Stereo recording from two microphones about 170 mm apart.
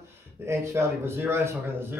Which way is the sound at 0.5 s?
15° right (ahead or behind).